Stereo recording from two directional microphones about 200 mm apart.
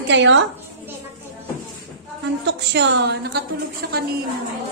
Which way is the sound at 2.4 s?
60° right (ahead or behind).